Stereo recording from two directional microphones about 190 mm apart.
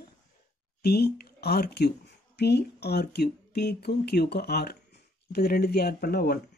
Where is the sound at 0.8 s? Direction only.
55° left (ahead or behind).